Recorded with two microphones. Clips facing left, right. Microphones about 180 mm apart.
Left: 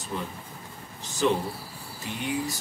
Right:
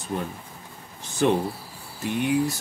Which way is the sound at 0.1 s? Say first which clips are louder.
Right 4 dB; 55° right (ahead or behind).